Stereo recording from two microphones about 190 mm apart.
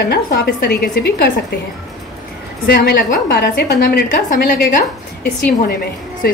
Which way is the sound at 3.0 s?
50° left (ahead or behind).